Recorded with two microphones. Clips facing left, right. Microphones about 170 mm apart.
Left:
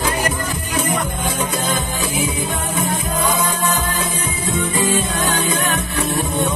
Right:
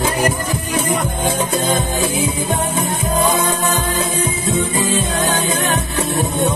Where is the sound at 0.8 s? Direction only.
25° right (ahead or behind).